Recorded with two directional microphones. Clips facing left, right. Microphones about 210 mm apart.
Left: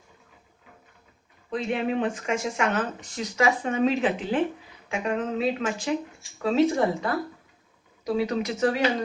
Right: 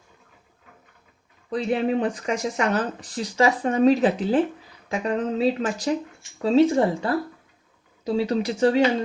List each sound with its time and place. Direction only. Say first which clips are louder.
1.5 s speech: right 4 dB; 35° right (ahead or behind)